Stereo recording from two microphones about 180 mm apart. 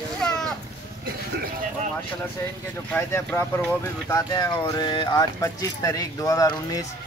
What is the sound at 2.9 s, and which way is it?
Speech, 15° left (ahead or behind).